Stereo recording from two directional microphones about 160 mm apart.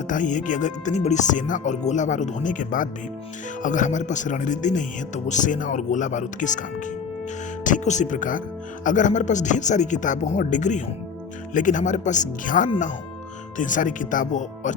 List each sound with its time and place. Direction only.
0.1 s speech: 50° left (ahead or behind)